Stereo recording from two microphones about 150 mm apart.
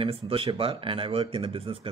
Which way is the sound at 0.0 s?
40° right (ahead or behind).